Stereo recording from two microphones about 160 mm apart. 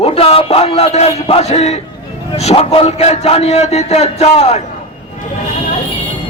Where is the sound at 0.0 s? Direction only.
35° left (ahead or behind).